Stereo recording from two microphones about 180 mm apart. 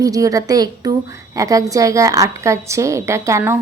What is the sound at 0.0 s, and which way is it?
A woman's voice, 20° right (ahead or behind).